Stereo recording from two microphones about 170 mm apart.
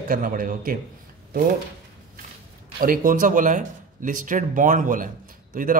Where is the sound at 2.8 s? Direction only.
55° right (ahead or behind).